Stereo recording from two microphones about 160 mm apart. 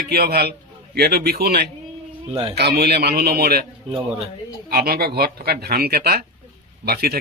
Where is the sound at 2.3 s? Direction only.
35° right (ahead or behind).